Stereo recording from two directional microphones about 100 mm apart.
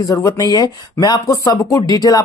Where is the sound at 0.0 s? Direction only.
35° left (ahead or behind).